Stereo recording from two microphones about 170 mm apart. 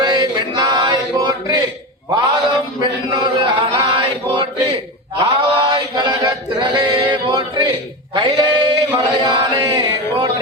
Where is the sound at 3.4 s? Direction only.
30° right (ahead or behind).